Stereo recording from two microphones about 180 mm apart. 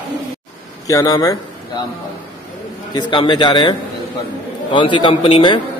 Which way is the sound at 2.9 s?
25° left (ahead or behind).